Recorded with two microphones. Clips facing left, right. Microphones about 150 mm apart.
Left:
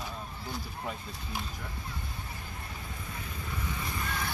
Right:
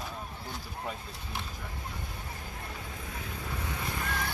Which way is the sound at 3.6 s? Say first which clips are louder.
Even; 70° right (ahead or behind).